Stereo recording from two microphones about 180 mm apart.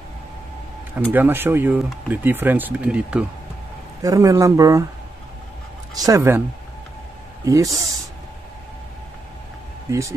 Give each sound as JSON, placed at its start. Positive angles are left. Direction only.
{"t": 0.9, "sound": "speech", "side_deg": -10}
{"t": 4.0, "sound": "speech", "side_deg": -20}
{"t": 5.9, "sound": "speech", "side_deg": -20}
{"t": 7.4, "sound": "speech", "side_deg": -15}
{"t": 9.8, "sound": "speech", "side_deg": -15}